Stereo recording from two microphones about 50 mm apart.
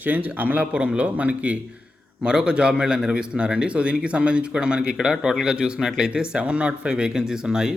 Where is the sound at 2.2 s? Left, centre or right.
Centre.